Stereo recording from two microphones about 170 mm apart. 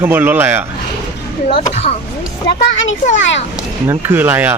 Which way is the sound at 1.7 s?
40° left (ahead or behind).